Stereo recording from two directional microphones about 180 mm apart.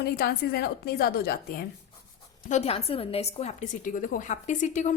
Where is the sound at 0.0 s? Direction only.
60° left (ahead or behind).